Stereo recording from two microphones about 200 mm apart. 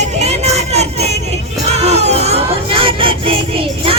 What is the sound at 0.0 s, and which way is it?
Music, 35° right (ahead or behind).